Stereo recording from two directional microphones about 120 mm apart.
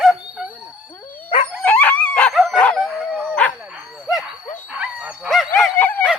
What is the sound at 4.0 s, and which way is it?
Dog, 5° right (ahead or behind).